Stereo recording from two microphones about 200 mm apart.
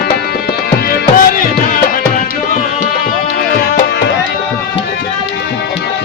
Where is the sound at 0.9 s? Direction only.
45° left (ahead or behind).